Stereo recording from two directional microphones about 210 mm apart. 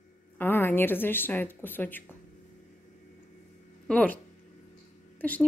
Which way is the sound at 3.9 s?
5° left (ahead or behind).